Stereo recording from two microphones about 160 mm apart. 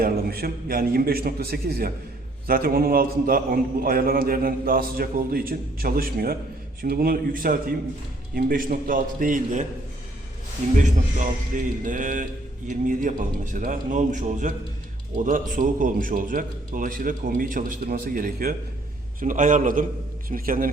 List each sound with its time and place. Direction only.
0.0 s a man's voice: 70° right (ahead or behind); by 9.6 s 55° right (ahead or behind)
10.8 s a man's voice: 50° right (ahead or behind)